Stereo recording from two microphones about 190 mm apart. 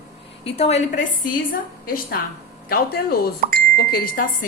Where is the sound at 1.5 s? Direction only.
50° left (ahead or behind).